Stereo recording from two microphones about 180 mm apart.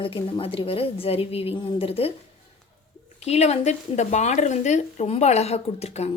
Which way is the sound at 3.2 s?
35° left (ahead or behind).